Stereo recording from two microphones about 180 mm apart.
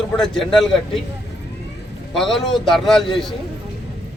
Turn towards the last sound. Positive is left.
turn(degrees=0)  # may be behind; listen again after turning